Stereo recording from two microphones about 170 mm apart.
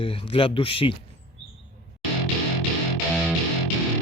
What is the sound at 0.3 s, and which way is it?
Speech, 30° left (ahead or behind).